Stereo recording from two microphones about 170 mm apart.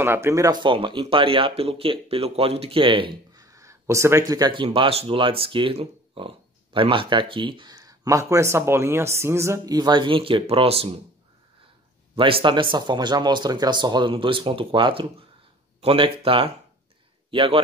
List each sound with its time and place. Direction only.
0.0 s speech: 15° right (ahead or behind); by 11.0 s 35° right (ahead or behind)
12.2 s a man's voice: 30° right (ahead or behind)